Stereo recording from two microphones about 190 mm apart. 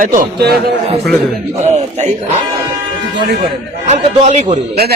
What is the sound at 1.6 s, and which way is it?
Speech, 35° right (ahead or behind).